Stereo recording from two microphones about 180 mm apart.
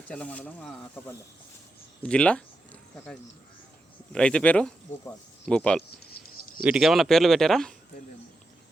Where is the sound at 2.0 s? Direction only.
5° left (ahead or behind).